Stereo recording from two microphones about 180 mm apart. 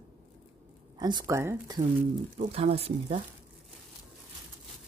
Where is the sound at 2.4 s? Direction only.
35° right (ahead or behind).